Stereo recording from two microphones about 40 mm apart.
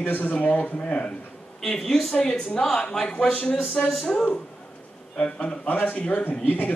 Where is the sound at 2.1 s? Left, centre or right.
Left.